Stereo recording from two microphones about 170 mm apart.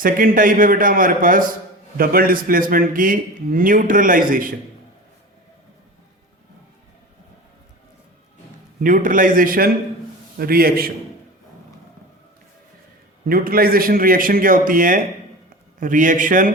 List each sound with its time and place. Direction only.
0.0 s a man's voice: 55° right (ahead or behind)
8.8 s a man's voice: 50° right (ahead or behind)
13.2 s a man's voice: 60° right (ahead or behind)